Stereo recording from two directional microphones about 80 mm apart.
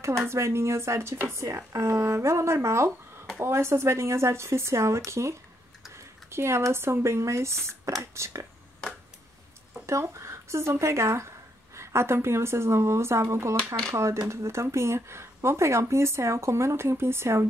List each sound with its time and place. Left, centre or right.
0.2 s speech: right
9.8 s speech: right